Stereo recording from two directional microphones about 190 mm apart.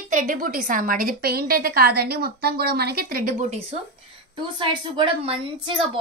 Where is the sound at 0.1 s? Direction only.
40° right (ahead or behind).